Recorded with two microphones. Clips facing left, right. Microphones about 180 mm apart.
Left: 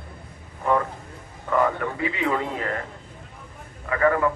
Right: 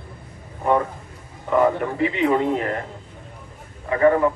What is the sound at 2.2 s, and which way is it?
Speech, 25° right (ahead or behind).